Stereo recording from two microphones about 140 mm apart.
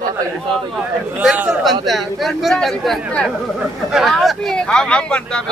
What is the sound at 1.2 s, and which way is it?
Speech, 5° right (ahead or behind).